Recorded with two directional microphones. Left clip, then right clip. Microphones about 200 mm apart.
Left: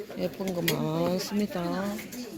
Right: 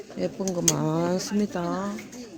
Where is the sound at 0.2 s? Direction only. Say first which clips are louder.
Right 3 dB; 45° right (ahead or behind).